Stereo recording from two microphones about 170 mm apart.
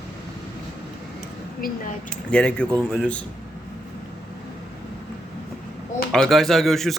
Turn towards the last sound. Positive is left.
turn(degrees=0)  # may be behind; listen again after turning